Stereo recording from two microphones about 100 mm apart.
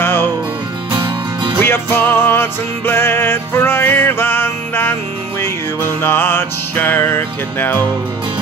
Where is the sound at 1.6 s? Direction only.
20° left (ahead or behind).